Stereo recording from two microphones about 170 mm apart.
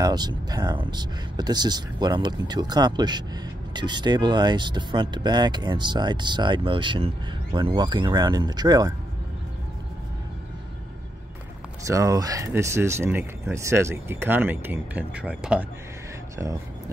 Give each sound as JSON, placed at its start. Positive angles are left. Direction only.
{"t": 0.0, "sound": "speech", "side_deg": -25}
{"t": 11.8, "sound": "speech", "side_deg": -20}